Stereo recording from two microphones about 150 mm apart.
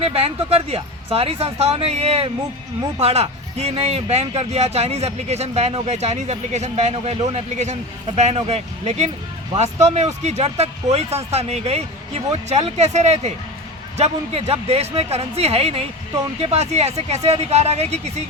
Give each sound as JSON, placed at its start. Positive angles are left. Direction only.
{"t": 0.0, "sound": "speech", "side_deg": -40}